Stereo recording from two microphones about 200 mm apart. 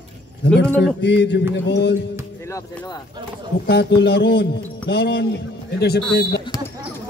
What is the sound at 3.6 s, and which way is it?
Speech, 55° left (ahead or behind).